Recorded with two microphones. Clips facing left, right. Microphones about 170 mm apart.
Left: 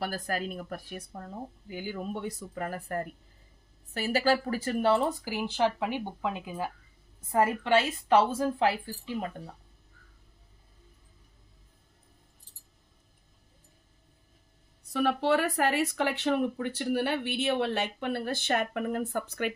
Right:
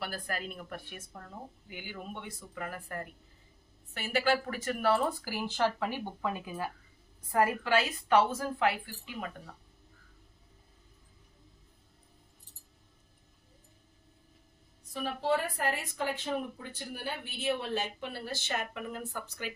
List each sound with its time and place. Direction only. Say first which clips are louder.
0.0 s speech: left 5 dB; 40° left (ahead or behind)
14.9 s speech: left 5 dB; 75° left (ahead or behind); by 19.5 s 60° left (ahead or behind)